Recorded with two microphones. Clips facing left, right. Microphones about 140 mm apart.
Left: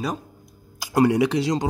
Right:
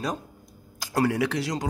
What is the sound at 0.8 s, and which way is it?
Speech, 15° left (ahead or behind).